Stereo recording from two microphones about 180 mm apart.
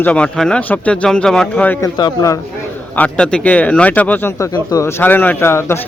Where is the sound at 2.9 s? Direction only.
5° left (ahead or behind).